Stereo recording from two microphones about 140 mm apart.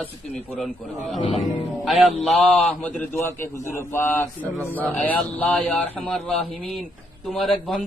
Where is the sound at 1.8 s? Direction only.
Centre (ahead or behind).